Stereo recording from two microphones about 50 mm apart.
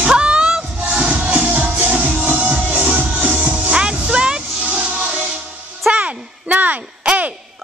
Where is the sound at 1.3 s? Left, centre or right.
Right.